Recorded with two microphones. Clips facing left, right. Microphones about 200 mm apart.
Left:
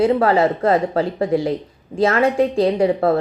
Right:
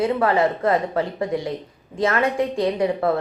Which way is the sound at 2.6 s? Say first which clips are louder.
Left 5 dB; 30° left (ahead or behind).